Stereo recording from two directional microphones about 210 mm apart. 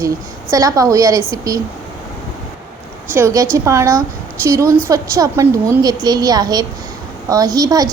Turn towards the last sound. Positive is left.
turn(degrees=-15)  # may be behind; listen again after turning